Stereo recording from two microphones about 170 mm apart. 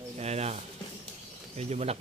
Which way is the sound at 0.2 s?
40° right (ahead or behind).